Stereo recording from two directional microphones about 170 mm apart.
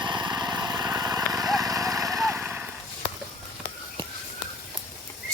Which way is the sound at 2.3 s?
10° right (ahead or behind).